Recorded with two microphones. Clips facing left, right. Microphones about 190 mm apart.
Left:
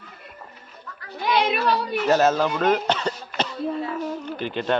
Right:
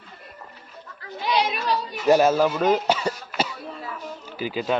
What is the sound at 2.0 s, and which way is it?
Speech, 10° right (ahead or behind).